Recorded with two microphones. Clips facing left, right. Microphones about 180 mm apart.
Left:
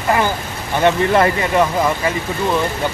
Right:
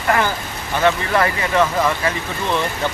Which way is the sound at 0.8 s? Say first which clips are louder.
Left 4 dB; 20° left (ahead or behind).